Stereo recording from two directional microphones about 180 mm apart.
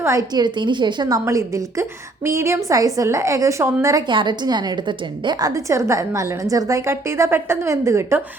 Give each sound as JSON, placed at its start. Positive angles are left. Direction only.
{"t": 0.0, "sound": "a woman's voice", "side_deg": -20}